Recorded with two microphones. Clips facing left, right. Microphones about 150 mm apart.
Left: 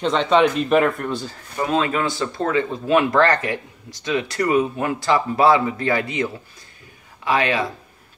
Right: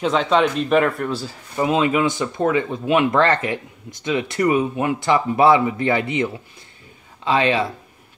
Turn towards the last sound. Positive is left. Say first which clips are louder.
# right 2 dB
turn(degrees=-25)  # may be behind; listen again after turning